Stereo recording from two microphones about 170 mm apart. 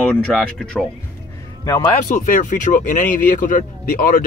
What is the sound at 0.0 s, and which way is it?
Speech, 5° left (ahead or behind).